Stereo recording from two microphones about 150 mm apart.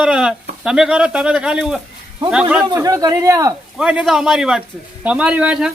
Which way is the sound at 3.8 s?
5° right (ahead or behind).